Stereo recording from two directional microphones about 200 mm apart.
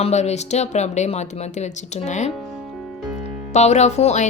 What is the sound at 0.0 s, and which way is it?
Speech, 35° left (ahead or behind).